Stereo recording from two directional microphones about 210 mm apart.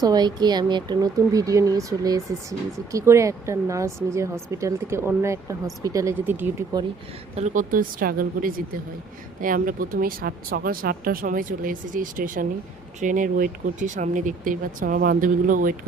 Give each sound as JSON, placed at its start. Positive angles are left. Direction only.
{"t": 0.0, "sound": "speech", "side_deg": -20}
{"t": 7.3, "sound": "speech", "side_deg": -35}